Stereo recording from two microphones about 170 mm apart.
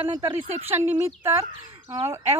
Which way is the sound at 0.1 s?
20° right (ahead or behind).